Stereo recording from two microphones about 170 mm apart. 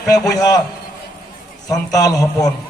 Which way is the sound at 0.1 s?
20° left (ahead or behind).